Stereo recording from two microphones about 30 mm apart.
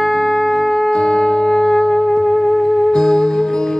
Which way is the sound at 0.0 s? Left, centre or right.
Centre.